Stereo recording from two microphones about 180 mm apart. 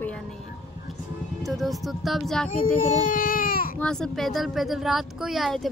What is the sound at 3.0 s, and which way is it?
Baby cry, 50° left (ahead or behind).